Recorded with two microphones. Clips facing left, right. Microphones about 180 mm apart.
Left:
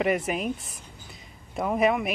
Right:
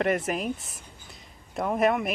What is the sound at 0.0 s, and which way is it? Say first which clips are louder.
Speech: left 1 dB; centre (ahead or behind).